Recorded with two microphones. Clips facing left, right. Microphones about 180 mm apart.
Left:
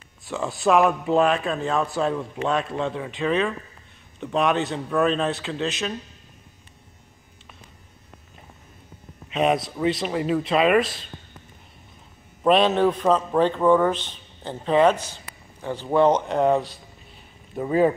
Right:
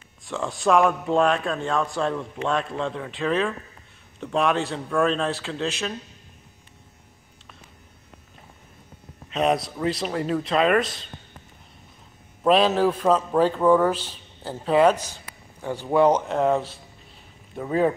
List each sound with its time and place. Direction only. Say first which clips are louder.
0.2 s speech: left 1 dB; centre (ahead or behind)
9.3 s speech: left 1 dB; centre (ahead or behind)
12.4 s speech: left 1 dB; centre (ahead or behind)